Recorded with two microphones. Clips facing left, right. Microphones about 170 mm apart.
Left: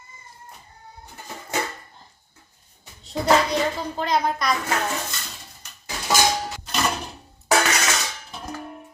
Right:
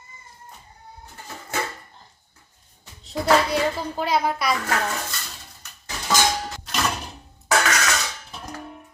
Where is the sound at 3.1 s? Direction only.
20° left (ahead or behind).